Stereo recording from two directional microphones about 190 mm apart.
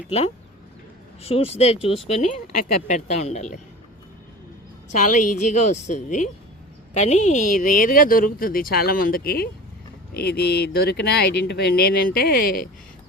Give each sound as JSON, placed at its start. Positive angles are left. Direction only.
{"t": 1.2, "sound": "a woman's voice", "side_deg": 30}
{"t": 5.1, "sound": "a woman's voice", "side_deg": 40}